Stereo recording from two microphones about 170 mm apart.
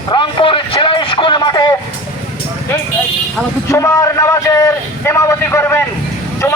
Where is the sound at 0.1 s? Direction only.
30° left (ahead or behind).